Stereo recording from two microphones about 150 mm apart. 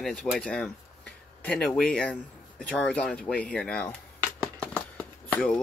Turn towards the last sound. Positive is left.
turn(degrees=5)  # may be behind; listen again after turning